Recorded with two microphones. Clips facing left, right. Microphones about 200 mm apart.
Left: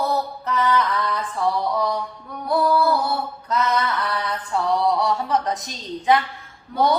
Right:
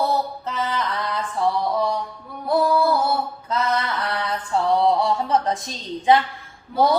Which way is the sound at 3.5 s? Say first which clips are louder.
Left 2 dB; 25° right (ahead or behind).